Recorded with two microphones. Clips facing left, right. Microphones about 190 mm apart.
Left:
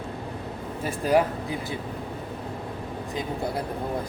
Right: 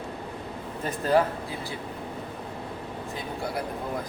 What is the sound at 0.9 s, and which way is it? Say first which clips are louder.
Speech: left 1 dB; 10° left (ahead or behind).